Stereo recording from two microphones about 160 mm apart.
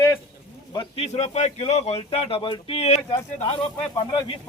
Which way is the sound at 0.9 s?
45° left (ahead or behind).